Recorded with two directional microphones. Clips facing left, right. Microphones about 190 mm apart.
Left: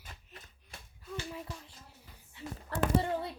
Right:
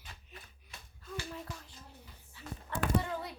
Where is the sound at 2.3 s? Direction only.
20° left (ahead or behind).